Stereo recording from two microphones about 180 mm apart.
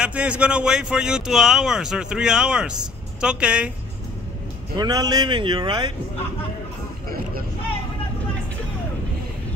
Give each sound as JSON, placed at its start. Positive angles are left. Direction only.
{"t": 0.0, "sound": "speech", "side_deg": -5}
{"t": 4.7, "sound": "a man's voice", "side_deg": -20}